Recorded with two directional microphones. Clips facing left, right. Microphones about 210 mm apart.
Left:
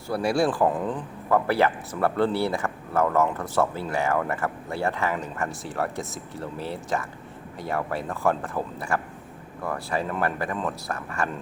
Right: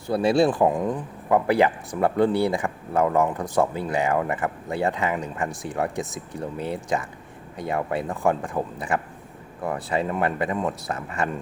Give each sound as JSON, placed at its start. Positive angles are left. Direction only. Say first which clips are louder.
{"t": 0.1, "sound": "speech", "louder": "right 4 dB", "side_deg": -20}